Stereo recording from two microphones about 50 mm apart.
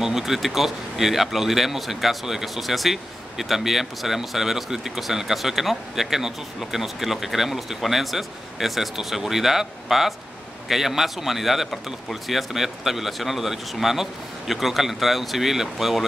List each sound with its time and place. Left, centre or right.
0.0 s speech: centre